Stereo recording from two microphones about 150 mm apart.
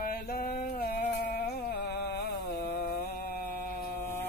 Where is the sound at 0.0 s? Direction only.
75° left (ahead or behind).